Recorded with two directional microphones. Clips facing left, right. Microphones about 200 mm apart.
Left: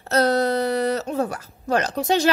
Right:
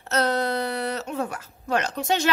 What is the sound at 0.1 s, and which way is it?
Speech, 40° left (ahead or behind).